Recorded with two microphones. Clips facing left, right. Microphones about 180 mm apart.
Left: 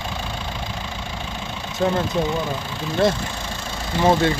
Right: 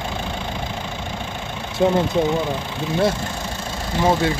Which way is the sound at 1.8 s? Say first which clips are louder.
Right 3 dB; 15° right (ahead or behind).